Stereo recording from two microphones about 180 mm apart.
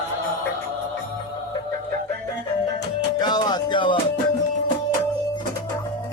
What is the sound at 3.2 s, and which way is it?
Music, 25° left (ahead or behind).